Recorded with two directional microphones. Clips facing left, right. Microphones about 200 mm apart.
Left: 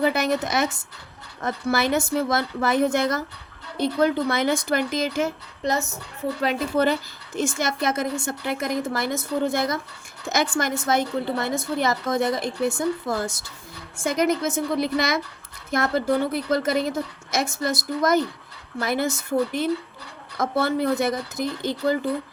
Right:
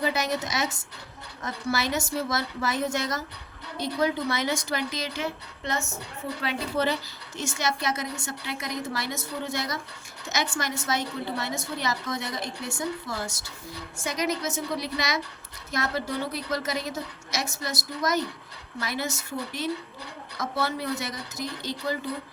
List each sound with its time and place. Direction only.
0.0 s a woman's voice: 55° left (ahead or behind)